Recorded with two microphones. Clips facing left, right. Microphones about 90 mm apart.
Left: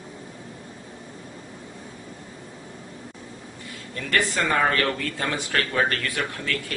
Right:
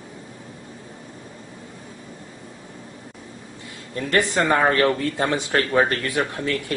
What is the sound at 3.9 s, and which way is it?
Speech, 20° right (ahead or behind).